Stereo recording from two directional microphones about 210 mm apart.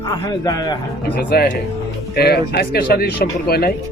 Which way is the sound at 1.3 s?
45° left (ahead or behind).